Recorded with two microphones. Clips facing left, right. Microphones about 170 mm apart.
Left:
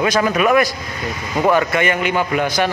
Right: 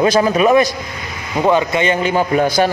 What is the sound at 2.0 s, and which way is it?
Speech, 35° right (ahead or behind).